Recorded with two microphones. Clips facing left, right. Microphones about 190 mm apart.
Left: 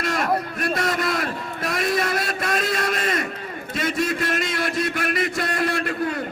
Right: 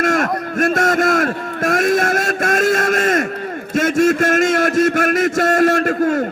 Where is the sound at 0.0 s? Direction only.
50° right (ahead or behind).